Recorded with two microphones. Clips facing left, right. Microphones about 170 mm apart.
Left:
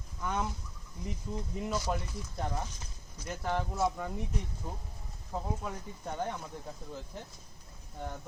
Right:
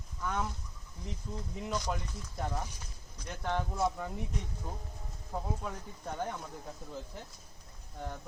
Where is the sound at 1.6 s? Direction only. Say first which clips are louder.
Left 2 dB; 5° left (ahead or behind).